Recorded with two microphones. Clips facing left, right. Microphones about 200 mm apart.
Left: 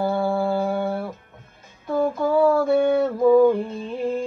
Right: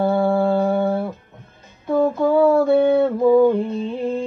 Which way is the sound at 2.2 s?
25° right (ahead or behind).